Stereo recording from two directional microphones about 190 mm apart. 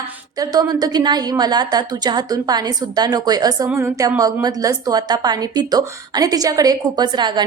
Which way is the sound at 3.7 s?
5° right (ahead or behind).